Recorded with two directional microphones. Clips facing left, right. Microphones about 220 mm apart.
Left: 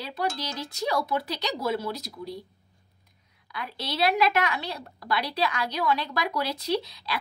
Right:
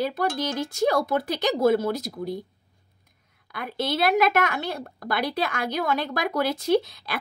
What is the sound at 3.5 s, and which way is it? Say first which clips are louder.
A woman's voice: right 6 dB; 50° right (ahead or behind).